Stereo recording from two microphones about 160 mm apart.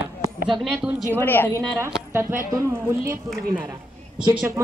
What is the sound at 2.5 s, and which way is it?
A woman's voice, 20° right (ahead or behind).